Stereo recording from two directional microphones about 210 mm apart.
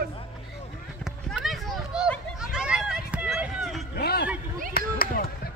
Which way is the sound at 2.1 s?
Centre (ahead or behind).